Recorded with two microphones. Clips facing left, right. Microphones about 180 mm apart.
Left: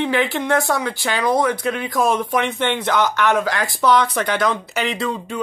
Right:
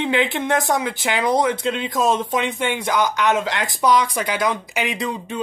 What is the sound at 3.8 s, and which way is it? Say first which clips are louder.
Speech: left 1 dB; 10° right (ahead or behind).